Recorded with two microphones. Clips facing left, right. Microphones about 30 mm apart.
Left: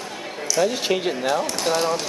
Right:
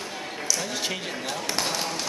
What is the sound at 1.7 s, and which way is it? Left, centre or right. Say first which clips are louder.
Speech: left 8 dB; centre.